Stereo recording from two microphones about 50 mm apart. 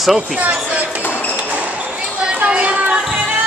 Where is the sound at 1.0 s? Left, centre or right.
Left.